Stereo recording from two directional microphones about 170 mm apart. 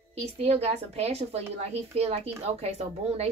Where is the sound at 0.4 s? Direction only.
40° right (ahead or behind).